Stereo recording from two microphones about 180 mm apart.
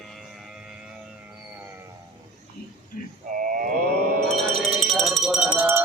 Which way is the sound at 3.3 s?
50° right (ahead or behind).